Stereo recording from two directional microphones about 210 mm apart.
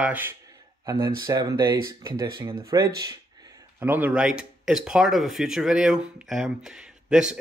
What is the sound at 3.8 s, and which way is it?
Speech, 10° right (ahead or behind).